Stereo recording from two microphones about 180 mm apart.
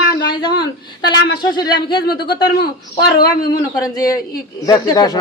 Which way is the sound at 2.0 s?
60° left (ahead or behind).